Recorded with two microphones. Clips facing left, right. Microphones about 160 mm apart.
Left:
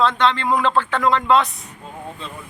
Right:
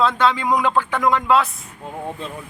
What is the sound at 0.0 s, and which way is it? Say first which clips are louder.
Speech: even; 5° right (ahead or behind).